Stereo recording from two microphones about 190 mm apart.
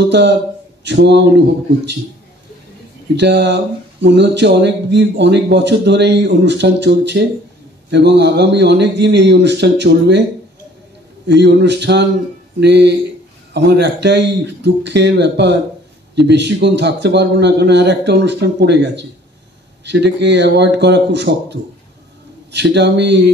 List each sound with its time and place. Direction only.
0.8 s speech: 65° right (ahead or behind)
3.2 s speech: 65° right (ahead or behind)
11.2 s speech: 65° right (ahead or behind)